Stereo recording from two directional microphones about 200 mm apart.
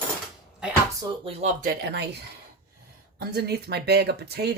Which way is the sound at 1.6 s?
50° right (ahead or behind).